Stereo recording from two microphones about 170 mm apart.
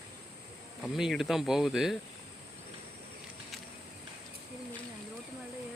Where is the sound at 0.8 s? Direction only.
Centre (ahead or behind).